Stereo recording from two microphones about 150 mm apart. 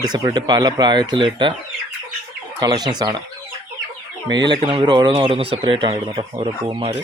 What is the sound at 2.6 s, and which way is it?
Speech, 25° right (ahead or behind).